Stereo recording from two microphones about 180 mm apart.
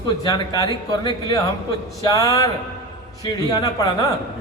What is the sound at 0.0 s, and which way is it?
Speech, 20° left (ahead or behind).